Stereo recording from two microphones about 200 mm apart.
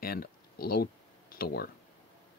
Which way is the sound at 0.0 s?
50° left (ahead or behind).